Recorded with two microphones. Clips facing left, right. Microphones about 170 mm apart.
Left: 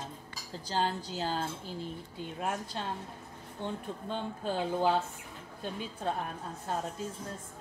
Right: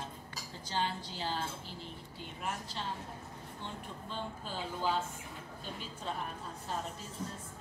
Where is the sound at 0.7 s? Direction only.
40° left (ahead or behind).